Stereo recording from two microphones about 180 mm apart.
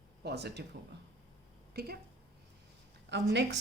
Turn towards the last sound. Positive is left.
turn(degrees=-70)  # may be behind; listen again after turning